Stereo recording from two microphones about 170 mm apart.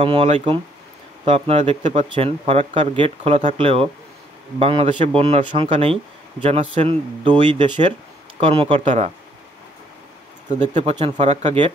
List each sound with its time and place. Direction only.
0.0 s speech: 35° right (ahead or behind)
10.5 s speech: 45° right (ahead or behind)